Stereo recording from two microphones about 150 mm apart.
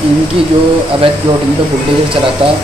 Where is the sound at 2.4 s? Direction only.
35° right (ahead or behind).